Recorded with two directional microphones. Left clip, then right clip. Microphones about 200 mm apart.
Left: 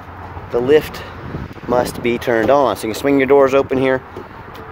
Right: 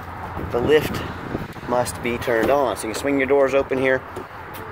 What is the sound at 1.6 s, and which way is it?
Speech, 50° left (ahead or behind).